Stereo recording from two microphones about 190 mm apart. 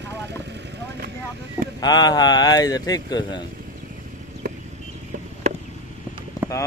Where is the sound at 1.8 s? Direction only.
20° left (ahead or behind).